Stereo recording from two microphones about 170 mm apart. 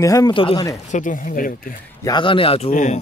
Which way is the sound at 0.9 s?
50° left (ahead or behind).